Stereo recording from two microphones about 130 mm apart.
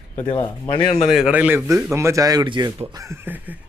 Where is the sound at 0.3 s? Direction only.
35° left (ahead or behind).